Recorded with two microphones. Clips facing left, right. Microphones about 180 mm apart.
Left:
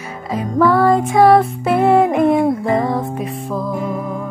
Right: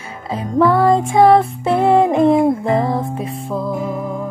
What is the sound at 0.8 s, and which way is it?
Music, 25° right (ahead or behind).